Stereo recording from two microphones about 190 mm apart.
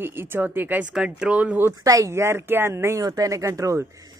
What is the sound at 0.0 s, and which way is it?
Speech, 10° right (ahead or behind).